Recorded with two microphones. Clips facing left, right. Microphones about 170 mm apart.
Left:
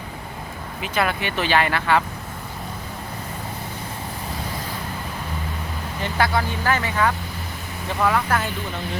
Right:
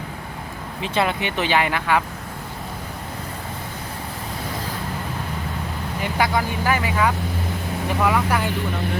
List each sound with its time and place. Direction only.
0.8 s speech: 25° right (ahead or behind)
6.0 s speech: 15° right (ahead or behind)